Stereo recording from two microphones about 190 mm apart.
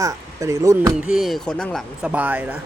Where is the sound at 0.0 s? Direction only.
15° right (ahead or behind).